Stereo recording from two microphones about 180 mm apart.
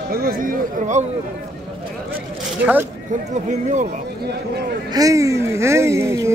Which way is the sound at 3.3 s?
40° right (ahead or behind).